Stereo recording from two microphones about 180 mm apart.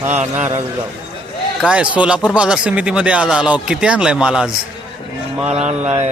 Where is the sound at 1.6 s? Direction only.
5° right (ahead or behind).